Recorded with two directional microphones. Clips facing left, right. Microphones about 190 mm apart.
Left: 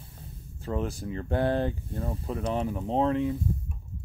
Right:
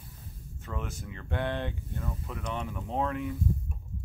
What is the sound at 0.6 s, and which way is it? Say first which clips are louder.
Speech: left 8 dB; 35° left (ahead or behind).